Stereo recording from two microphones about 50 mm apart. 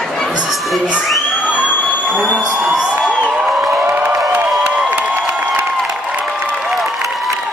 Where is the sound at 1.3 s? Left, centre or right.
Left.